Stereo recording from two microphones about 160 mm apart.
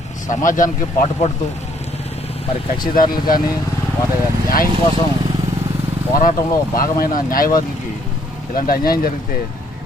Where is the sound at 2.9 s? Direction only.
65° left (ahead or behind).